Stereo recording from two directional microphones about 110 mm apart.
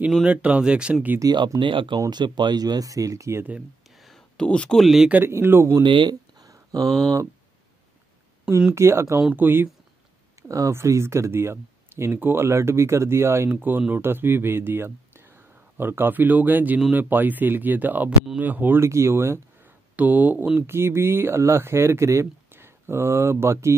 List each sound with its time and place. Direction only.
0.1 s speech: 10° right (ahead or behind)
1.2 s speech: 35° right (ahead or behind)
3.5 s speech: centre (ahead or behind)
5.1 s speech: 20° right (ahead or behind)
5.8 s a sound: 45° right (ahead or behind)
8.7 s speech: 25° right (ahead or behind)